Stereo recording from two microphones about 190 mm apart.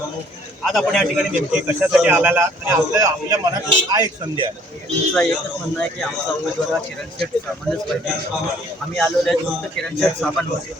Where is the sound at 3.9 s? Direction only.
20° right (ahead or behind).